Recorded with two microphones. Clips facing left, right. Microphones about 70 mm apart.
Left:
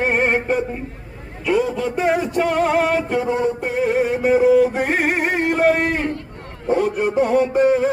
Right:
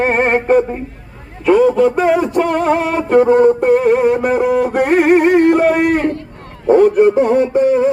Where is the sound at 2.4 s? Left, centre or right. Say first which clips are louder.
Right 3 dB; right.